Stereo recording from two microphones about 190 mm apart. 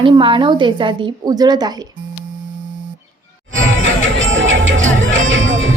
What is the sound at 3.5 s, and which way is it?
Music, 90° right.